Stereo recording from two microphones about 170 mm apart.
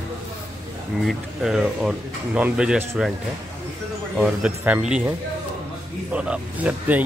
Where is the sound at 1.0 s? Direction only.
Centre (ahead or behind).